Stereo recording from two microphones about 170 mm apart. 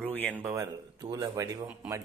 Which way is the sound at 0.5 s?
20° right (ahead or behind).